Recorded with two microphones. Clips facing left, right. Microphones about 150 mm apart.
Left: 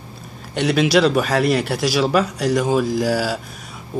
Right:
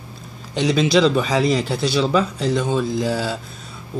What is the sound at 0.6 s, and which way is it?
Speech, 65° left (ahead or behind).